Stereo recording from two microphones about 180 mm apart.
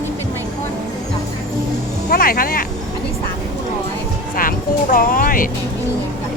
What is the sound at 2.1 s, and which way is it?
Speech, 55° left (ahead or behind).